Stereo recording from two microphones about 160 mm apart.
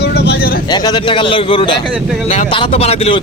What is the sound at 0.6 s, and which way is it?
Speech, 25° left (ahead or behind).